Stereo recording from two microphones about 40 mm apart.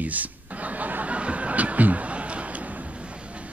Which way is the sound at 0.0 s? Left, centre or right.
Right.